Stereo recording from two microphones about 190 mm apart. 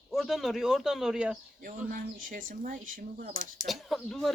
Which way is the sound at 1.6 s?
45° right (ahead or behind).